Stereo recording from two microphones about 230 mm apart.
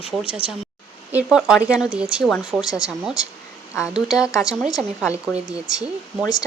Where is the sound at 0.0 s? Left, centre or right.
Left.